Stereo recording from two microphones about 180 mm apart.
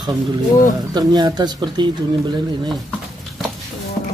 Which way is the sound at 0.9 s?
25° right (ahead or behind).